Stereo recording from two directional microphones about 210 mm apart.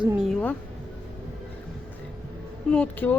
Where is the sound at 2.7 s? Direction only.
5° left (ahead or behind).